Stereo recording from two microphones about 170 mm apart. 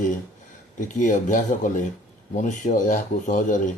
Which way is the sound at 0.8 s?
50° left (ahead or behind).